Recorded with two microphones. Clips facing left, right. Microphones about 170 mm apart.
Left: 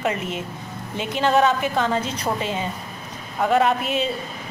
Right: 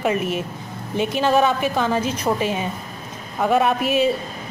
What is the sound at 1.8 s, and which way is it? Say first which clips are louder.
Speech: right 2 dB; 15° right (ahead or behind).